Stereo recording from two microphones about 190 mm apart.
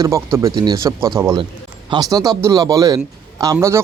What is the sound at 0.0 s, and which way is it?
A man's voice, 15° right (ahead or behind).